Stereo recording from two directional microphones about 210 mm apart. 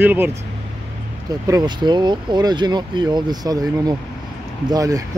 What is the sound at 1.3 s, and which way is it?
Speech, 20° right (ahead or behind).